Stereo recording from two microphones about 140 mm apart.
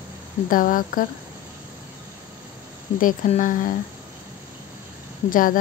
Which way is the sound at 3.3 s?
65° left (ahead or behind).